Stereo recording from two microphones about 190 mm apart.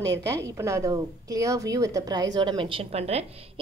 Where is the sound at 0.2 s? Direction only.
15° right (ahead or behind).